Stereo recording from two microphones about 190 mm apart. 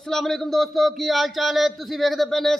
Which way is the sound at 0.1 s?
Centre (ahead or behind).